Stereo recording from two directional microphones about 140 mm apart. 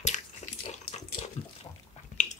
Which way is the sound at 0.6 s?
55° left (ahead or behind).